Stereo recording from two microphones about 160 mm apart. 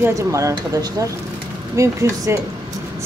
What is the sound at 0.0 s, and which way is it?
Speech, 20° right (ahead or behind).